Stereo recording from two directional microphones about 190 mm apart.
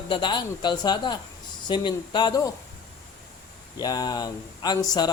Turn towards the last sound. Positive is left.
turn(degrees=20)  # may be behind; listen again after turning